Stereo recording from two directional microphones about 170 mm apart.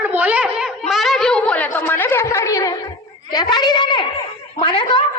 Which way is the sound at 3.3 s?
25° left (ahead or behind).